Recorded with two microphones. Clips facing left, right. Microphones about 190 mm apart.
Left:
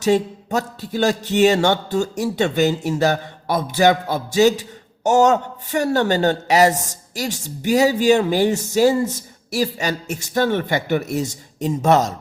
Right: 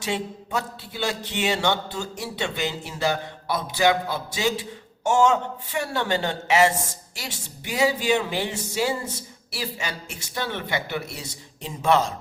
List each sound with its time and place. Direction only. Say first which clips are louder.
0.0 s speech: left 11 dB; 40° left (ahead or behind)